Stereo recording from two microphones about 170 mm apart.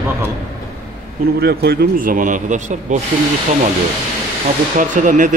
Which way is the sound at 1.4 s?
70° right (ahead or behind).